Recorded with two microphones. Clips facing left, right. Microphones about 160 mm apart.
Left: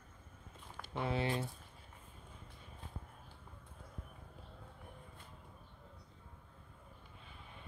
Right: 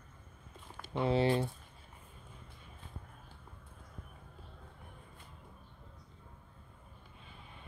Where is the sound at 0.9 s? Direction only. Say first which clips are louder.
Right 7 dB; 30° right (ahead or behind).